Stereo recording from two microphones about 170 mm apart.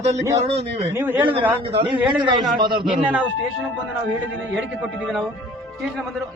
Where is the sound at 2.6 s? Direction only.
25° right (ahead or behind).